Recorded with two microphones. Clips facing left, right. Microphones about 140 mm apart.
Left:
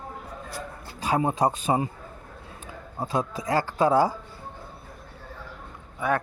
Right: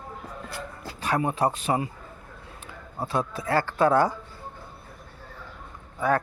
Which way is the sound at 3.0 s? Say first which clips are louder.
Even; 15° left (ahead or behind).